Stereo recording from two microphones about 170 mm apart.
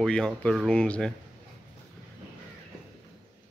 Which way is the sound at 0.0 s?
5° left (ahead or behind).